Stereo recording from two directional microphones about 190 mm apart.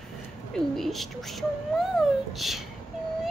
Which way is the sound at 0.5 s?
Centre (ahead or behind).